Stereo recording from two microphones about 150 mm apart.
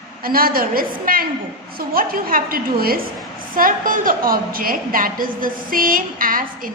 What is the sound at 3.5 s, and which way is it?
A woman's voice, 70° right (ahead or behind).